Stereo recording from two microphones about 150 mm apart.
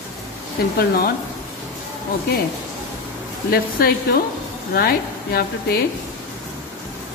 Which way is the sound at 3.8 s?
80° left.